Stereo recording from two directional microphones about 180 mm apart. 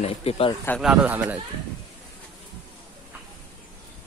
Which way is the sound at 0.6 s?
Centre (ahead or behind).